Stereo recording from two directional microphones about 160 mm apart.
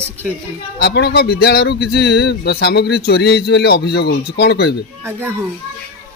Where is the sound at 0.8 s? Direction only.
90° left.